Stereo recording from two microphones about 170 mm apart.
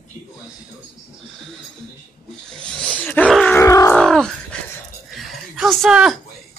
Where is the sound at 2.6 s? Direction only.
5° left (ahead or behind).